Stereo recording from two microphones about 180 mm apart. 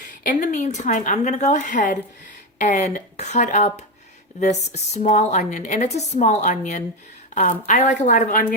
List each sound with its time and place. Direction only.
0.2 s a woman's voice: 45° left (ahead or behind)